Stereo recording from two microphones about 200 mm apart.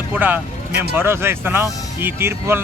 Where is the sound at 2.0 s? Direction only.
10° right (ahead or behind).